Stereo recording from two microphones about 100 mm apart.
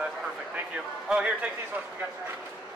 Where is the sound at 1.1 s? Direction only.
10° right (ahead or behind).